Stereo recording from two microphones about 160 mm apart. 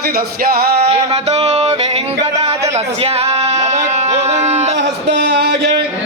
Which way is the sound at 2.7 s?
40° right (ahead or behind).